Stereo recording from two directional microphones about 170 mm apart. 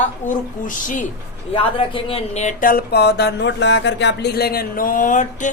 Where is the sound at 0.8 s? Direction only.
50° left (ahead or behind).